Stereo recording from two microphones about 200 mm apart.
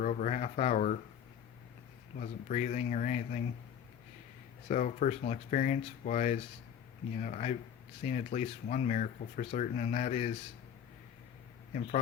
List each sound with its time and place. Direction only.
0.0 s speech: 40° left (ahead or behind)
2.1 s speech: 40° left (ahead or behind)
4.7 s speech: 40° left (ahead or behind)